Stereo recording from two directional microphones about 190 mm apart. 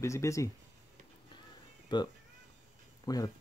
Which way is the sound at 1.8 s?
25° left (ahead or behind).